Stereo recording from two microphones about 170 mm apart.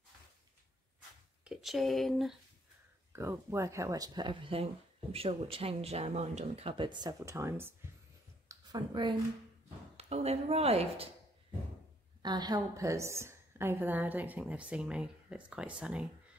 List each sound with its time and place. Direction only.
1.4 s speech: centre (ahead or behind)
3.1 s speech: 15° right (ahead or behind)
8.5 s speech: 25° right (ahead or behind)
9.9 s speech: 40° right (ahead or behind)
12.2 s a woman's voice: 25° right (ahead or behind); by 16.1 s 5° right (ahead or behind)